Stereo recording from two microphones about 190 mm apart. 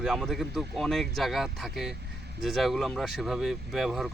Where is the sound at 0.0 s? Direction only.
Centre (ahead or behind).